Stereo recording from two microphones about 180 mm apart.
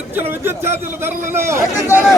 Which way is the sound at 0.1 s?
10° right (ahead or behind).